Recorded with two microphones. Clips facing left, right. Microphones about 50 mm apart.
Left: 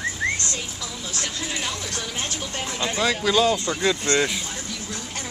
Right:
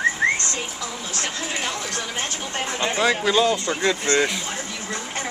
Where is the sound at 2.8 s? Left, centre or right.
Right.